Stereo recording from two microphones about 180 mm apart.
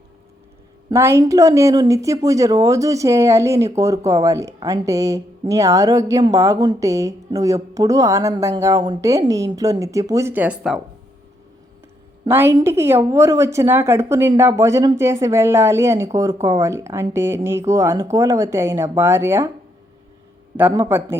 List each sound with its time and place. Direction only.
0.9 s a woman's voice: 15° right (ahead or behind)
12.3 s a woman's voice: 10° right (ahead or behind)
20.6 s a woman's voice: 15° right (ahead or behind)